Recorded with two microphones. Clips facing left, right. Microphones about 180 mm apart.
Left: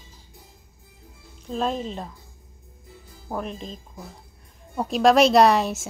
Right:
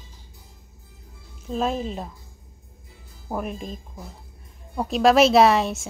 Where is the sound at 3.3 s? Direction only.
5° right (ahead or behind).